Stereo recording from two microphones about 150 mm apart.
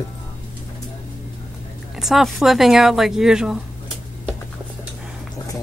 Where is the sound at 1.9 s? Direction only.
Centre (ahead or behind).